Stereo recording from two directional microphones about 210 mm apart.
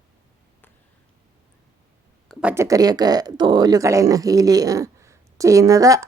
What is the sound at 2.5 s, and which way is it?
Speech, 15° right (ahead or behind).